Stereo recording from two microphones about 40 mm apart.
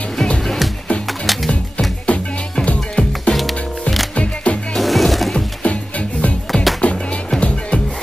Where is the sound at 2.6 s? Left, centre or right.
Left.